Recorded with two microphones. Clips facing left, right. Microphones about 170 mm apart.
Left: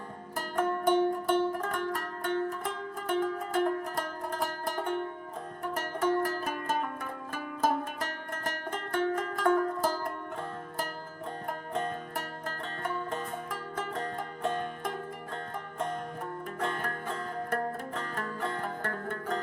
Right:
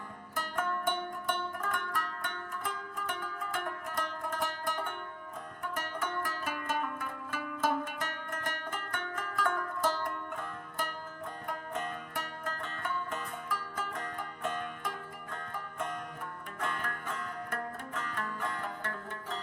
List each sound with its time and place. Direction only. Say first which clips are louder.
0.3 s music: left 5 dB; 35° left (ahead or behind)
5.6 s zither: left 8 dB; 40° left (ahead or behind)
11.4 s music: left 4 dB; 40° left (ahead or behind)
16.6 s music: left 3 dB; 35° left (ahead or behind); by 19.4 s 55° left (ahead or behind)